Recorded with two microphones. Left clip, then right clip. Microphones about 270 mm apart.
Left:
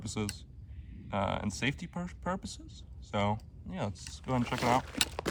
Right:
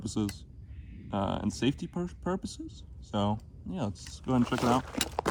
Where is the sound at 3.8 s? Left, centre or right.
Left.